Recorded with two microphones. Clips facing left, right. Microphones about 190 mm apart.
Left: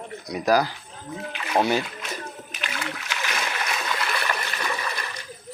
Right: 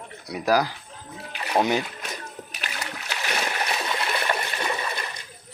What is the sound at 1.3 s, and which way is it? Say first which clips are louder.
Rowboat: even; 40° right (ahead or behind).